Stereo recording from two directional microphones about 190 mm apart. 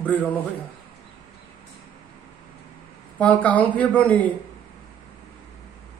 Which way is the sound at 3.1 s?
10° left (ahead or behind).